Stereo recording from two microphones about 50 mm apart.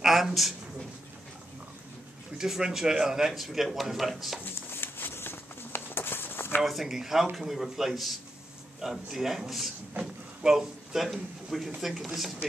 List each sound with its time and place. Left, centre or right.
0.0 s a woman's voice: centre
2.3 s speech: centre
4.6 s a sound: left
6.6 s speech: centre
10.4 s speech: centre